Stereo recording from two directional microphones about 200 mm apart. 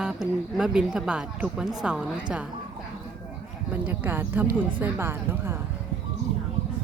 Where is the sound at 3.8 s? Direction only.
10° right (ahead or behind).